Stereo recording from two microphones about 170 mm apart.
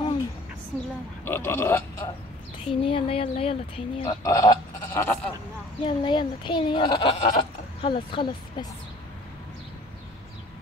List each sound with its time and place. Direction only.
1.2 s speech: 15° left (ahead or behind)
2.6 s speech: 35° left (ahead or behind)
4.2 s a sound: 20° left (ahead or behind)
5.9 s speech: 30° left (ahead or behind)